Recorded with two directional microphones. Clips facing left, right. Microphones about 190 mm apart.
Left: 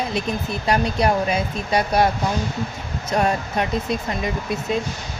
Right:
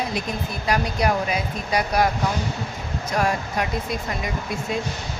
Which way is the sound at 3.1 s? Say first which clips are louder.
Left 3 dB; 25° left (ahead or behind).